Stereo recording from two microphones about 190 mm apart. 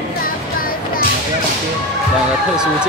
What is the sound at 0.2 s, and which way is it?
Music, 50° left (ahead or behind).